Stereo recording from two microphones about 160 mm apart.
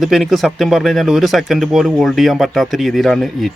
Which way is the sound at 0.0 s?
Centre (ahead or behind).